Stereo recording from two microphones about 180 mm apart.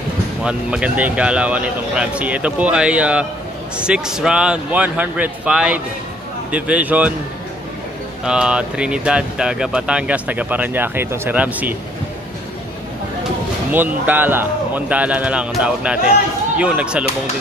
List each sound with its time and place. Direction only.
0.4 s speech: 5° right (ahead or behind)
8.2 s speech: 5° right (ahead or behind)
13.7 s speech: 10° right (ahead or behind)